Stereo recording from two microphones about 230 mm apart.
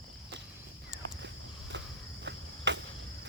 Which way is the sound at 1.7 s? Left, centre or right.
Right.